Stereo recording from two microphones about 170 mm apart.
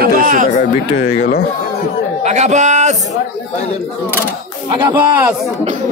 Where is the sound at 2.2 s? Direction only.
40° right (ahead or behind).